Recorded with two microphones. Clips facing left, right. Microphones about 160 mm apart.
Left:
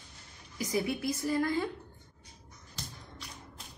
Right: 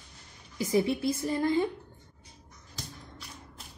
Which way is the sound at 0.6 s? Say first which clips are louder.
Right 5 dB; 25° right (ahead or behind).